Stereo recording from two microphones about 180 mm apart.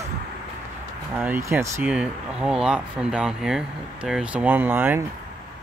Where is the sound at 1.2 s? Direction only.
10° right (ahead or behind).